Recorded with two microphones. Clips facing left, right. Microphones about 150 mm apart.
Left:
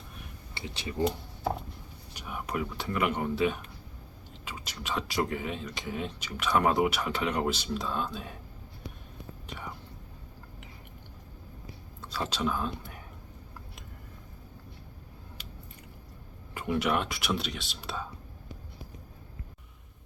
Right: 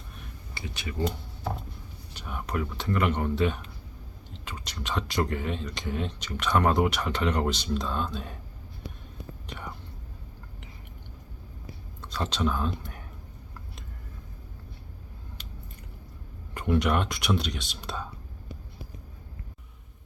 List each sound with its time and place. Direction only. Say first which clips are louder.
0.5 s speech: even; 30° left (ahead or behind)
2.1 s speech: right 1 dB; 5° left (ahead or behind)
12.0 s speech: right 2 dB; 5° left (ahead or behind)
16.6 s speech: right 3 dB; 5° left (ahead or behind)